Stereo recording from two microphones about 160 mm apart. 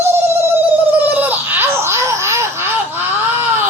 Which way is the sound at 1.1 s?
10° right (ahead or behind).